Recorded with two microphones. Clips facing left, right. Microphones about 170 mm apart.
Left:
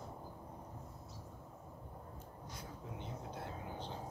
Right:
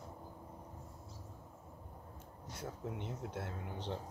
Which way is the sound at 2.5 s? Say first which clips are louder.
Right 7 dB; 75° right (ahead or behind).